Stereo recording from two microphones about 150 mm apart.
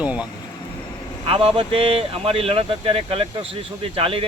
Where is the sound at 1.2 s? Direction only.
40° right (ahead or behind).